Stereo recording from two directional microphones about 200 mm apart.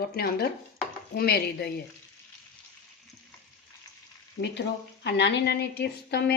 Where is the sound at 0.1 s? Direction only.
50° left (ahead or behind).